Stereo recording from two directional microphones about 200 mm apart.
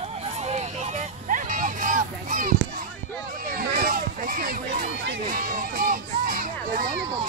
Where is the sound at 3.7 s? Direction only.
45° right (ahead or behind).